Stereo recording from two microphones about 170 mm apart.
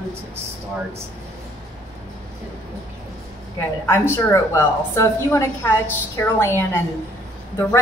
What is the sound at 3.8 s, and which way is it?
A woman's voice, 15° left (ahead or behind).